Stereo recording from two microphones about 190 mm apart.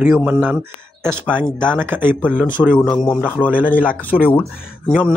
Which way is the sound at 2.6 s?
10° left (ahead or behind).